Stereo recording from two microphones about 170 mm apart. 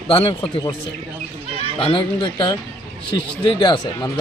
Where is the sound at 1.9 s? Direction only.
30° left (ahead or behind).